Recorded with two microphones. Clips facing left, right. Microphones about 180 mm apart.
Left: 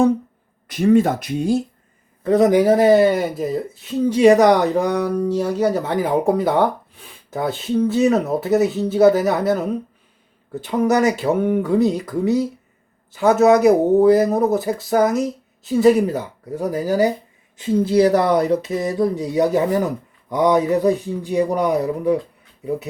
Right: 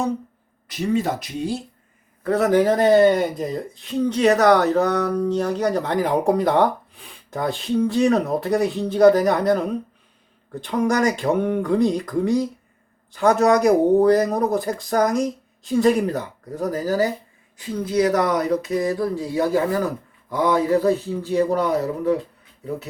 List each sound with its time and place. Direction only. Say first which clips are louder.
0.7 s speech: left 7 dB; 55° left (ahead or behind)
2.2 s speech: left 3 dB; 15° left (ahead or behind)
17.6 s speech: left 5 dB; 25° left (ahead or behind)